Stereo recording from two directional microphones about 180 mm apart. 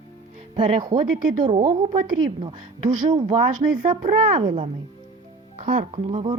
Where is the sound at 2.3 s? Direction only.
30° right (ahead or behind).